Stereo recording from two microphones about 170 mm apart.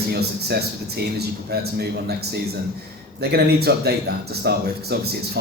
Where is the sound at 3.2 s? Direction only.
70° right (ahead or behind).